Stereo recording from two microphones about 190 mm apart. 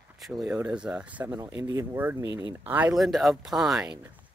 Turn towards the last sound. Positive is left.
turn(degrees=-5)  # may be behind; listen again after turning